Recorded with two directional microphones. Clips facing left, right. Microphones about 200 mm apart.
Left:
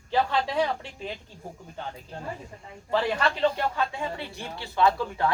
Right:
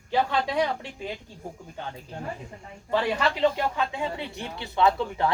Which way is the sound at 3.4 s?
15° right (ahead or behind).